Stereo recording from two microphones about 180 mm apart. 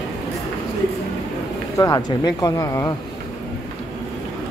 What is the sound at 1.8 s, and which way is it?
Speech, 20° left (ahead or behind).